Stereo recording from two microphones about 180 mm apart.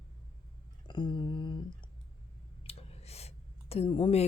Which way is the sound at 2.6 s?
35° left (ahead or behind).